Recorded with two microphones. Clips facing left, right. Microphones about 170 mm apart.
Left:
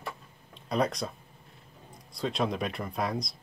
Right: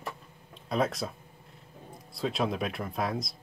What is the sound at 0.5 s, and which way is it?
Speech, centre (ahead or behind).